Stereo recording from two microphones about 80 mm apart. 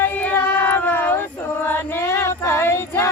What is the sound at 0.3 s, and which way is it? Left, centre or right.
Child singing, left.